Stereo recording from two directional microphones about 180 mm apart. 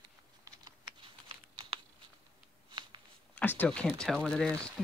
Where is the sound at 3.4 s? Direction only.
10° left (ahead or behind).